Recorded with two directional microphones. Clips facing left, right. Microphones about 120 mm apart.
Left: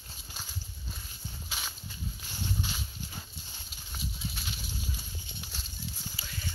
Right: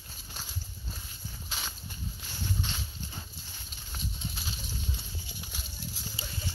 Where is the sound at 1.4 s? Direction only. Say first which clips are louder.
Right 1 dB; centre (ahead or behind).